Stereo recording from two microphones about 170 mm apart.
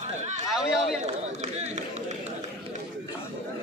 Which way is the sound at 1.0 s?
40° right (ahead or behind).